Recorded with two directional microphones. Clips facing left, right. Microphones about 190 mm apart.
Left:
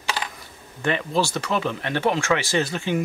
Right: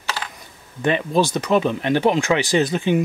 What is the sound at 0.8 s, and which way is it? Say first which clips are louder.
Speech: right 4 dB; 20° right (ahead or behind).